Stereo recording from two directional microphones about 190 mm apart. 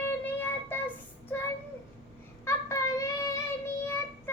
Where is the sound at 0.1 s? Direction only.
10° left (ahead or behind).